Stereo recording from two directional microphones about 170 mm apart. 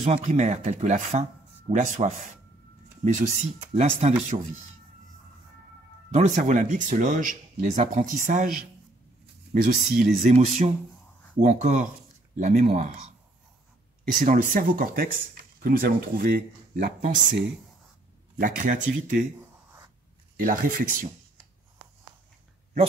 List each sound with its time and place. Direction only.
0.0 s speech: 40° right (ahead or behind)
6.1 s speech: 45° right (ahead or behind)
9.5 s speech: 55° right (ahead or behind)
10.3 s speech: 40° right (ahead or behind)
14.0 s speech: 50° right (ahead or behind)
18.4 s speech: 50° right (ahead or behind)
20.3 s speech: 55° right (ahead or behind)